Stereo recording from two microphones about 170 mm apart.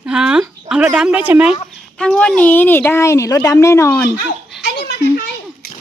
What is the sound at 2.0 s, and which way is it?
A woman's voice, 5° left (ahead or behind).